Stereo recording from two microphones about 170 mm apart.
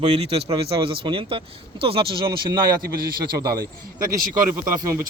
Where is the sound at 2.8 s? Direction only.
60° right (ahead or behind).